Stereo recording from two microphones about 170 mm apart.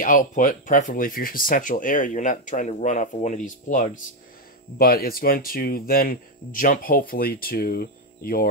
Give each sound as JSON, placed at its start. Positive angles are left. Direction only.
{"t": 0.0, "sound": "speech", "side_deg": 50}
{"t": 4.7, "sound": "speech", "side_deg": 60}